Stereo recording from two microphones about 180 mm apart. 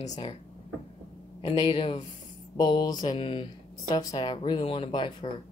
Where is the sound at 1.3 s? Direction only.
30° left (ahead or behind).